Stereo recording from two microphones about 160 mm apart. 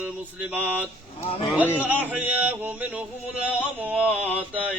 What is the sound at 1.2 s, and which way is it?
Speech, 40° left (ahead or behind).